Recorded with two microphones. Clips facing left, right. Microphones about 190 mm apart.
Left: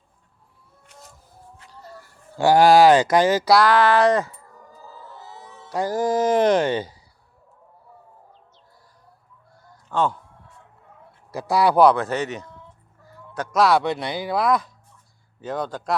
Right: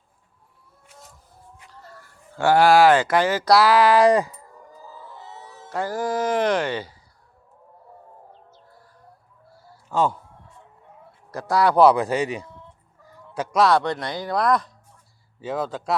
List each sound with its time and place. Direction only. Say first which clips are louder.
0.9 s a sound: left 1 dB; centre (ahead or behind)
2.3 s speech: left 2 dB; 15° left (ahead or behind)
3.4 s speech: even; 5° right (ahead or behind)
5.6 s speech: left 3 dB; 15° left (ahead or behind)
9.6 s fowl: right 1 dB; 10° right (ahead or behind)
11.3 s speech: left 1 dB; 10° left (ahead or behind)
11.9 s speech: right 2 dB; 10° right (ahead or behind)
13.1 s fowl: right 1 dB; 10° right (ahead or behind)
13.7 s speech: left 1 dB; 5° left (ahead or behind)